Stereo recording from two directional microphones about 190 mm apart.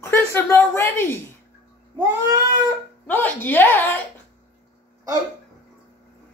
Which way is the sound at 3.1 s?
10° left (ahead or behind).